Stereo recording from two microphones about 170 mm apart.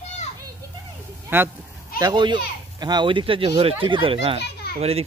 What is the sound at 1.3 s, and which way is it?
Speech, 15° right (ahead or behind).